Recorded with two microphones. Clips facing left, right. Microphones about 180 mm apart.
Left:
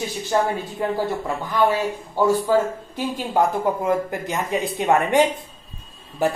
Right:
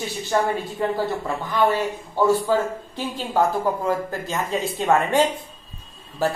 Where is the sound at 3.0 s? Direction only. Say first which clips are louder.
Left 1 dB; 20° left (ahead or behind).